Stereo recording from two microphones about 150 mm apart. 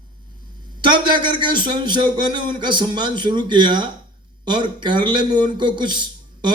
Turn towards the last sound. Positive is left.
turn(degrees=-30)  # may be behind; listen again after turning